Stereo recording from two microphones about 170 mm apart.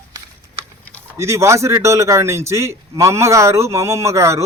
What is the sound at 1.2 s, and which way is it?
A man's voice, 15° right (ahead or behind).